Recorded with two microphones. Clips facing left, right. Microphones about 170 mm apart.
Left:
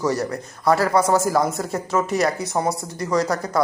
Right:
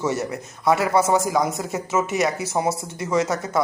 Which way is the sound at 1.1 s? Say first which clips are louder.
Left 1 dB; centre (ahead or behind).